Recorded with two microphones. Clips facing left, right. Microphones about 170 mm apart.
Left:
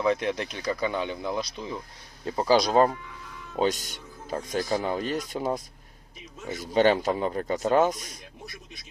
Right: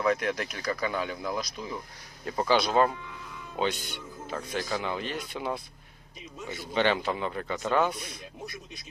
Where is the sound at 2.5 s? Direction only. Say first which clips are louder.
Left 4 dB; 40° left (ahead or behind).